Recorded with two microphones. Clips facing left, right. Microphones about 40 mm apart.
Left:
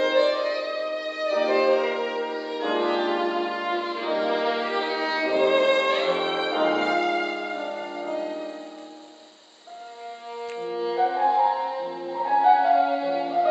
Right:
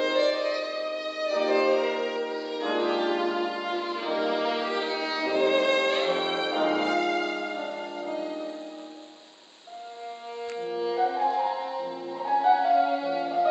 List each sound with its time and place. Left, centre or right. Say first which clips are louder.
0.0 s music: left 3 dB; centre
7.7 s music: left 3 dB; left
10.6 s music: left 2 dB; centre